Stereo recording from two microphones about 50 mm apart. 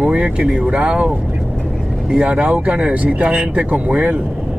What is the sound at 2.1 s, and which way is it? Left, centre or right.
Speech, centre.